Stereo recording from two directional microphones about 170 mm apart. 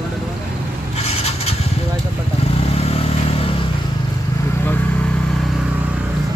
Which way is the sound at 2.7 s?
35° left (ahead or behind).